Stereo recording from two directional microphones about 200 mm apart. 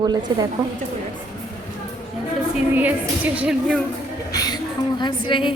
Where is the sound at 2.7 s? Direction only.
10° right (ahead or behind).